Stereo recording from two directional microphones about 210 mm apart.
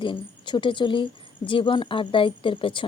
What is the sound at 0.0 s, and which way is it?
A woman's voice, 20° left (ahead or behind).